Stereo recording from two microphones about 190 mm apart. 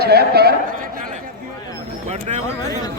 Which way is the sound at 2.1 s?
35° right (ahead or behind).